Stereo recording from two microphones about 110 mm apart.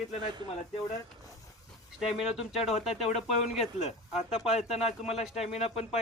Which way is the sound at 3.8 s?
70° left (ahead or behind).